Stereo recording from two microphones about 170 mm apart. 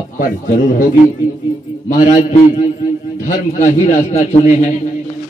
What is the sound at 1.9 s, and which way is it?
Speech, 40° left (ahead or behind).